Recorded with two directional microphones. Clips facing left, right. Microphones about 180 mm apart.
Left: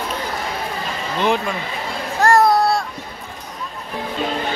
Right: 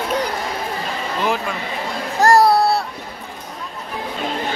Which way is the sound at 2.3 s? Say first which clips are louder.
Right 1 dB; 35° right (ahead or behind).